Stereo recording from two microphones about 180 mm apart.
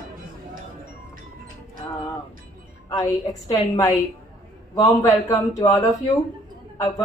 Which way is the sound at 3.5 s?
20° left (ahead or behind).